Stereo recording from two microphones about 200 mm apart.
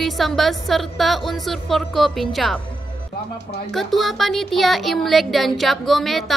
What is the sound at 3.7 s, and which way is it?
Speech, centre (ahead or behind).